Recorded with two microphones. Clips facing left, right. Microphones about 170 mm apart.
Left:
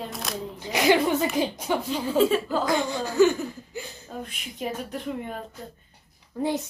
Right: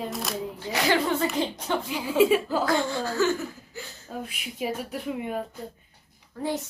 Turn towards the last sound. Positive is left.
turn(degrees=20)  # may be behind; listen again after turning